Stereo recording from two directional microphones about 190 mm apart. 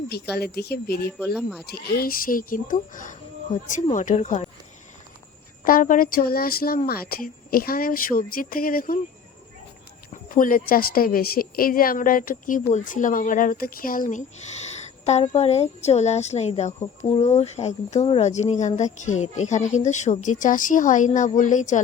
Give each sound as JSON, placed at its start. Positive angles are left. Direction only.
{"t": 0.1, "sound": "speech", "side_deg": 55}
{"t": 1.4, "sound": "speech", "side_deg": 0}
{"t": 1.6, "sound": "speech", "side_deg": 55}
{"t": 5.6, "sound": "speech", "side_deg": 45}
{"t": 10.2, "sound": "a woman's voice", "side_deg": 45}